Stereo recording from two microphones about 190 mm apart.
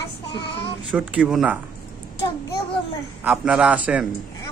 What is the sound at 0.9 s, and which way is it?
Speech, 5° right (ahead or behind).